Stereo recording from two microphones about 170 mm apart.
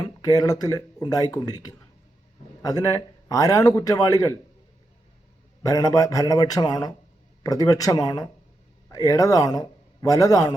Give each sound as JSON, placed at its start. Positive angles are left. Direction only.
{"t": 0.0, "sound": "a man's voice", "side_deg": 20}
{"t": 5.6, "sound": "a man's voice", "side_deg": 20}